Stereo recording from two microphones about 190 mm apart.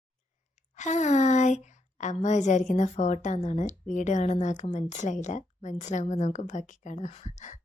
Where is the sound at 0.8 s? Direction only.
40° left (ahead or behind).